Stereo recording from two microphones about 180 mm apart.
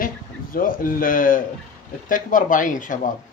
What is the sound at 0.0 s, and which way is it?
Speech, 50° left (ahead or behind).